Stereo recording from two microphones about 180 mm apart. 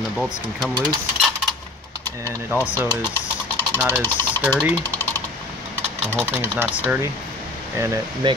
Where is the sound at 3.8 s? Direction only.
10° right (ahead or behind).